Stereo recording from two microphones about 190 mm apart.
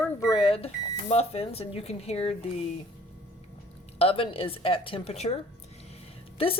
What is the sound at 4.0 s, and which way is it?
Speech, 30° left (ahead or behind).